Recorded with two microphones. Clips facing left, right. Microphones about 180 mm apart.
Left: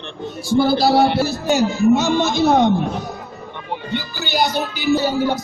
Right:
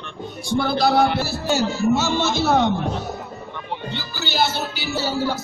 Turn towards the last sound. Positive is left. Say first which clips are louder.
# left 5 dB
turn(degrees=15)  # may be behind; listen again after turning